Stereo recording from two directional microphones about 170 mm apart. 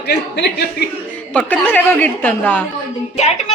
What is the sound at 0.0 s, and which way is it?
Speech, 85° left.